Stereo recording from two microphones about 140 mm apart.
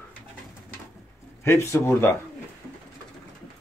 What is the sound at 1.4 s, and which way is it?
Speech, 20° left (ahead or behind).